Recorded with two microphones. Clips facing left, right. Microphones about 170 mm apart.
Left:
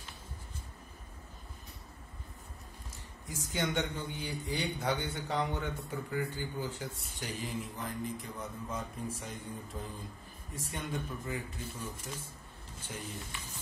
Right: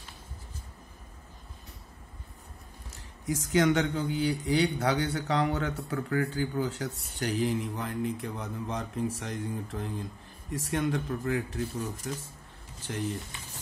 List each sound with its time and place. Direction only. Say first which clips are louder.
3.3 s a man's voice: right 11 dB; 85° right
10.5 s a man's voice: right 10 dB; 80° right